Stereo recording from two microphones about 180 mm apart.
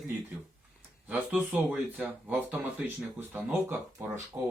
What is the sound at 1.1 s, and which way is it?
Speech, 10° right (ahead or behind).